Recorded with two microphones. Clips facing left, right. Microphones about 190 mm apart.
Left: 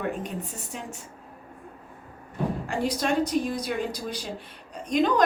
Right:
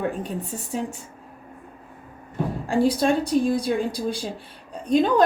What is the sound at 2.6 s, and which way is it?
Speech, 30° right (ahead or behind).